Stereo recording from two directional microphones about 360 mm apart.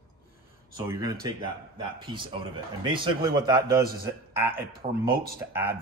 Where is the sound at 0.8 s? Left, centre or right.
Centre.